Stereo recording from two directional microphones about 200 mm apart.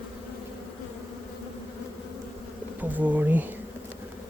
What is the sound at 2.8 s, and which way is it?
Bee, 10° right (ahead or behind).